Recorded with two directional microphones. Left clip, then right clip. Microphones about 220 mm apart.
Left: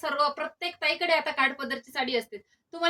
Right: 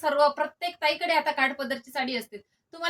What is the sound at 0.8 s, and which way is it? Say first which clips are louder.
A woman's voice: right 1 dB; 15° right (ahead or behind).